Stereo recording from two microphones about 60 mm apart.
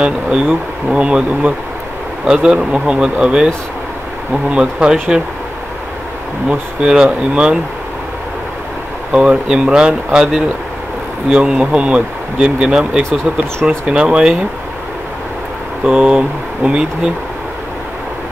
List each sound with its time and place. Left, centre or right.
0.0 s speech: centre
4.5 s speech: centre
6.8 s speech: centre
9.1 s speech: centre
15.8 s speech: centre